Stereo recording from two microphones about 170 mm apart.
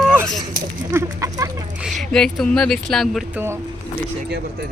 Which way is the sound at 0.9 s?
20° right (ahead or behind).